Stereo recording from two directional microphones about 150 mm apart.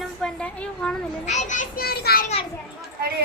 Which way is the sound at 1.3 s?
55° left (ahead or behind).